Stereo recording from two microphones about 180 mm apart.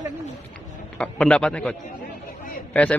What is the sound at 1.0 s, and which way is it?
A man's voice, 5° left (ahead or behind).